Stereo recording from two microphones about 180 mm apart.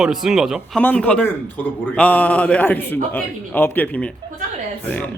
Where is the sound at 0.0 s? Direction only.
Centre (ahead or behind).